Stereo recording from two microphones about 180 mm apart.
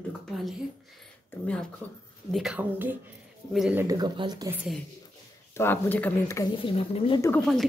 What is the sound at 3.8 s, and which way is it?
Speech, 20° right (ahead or behind).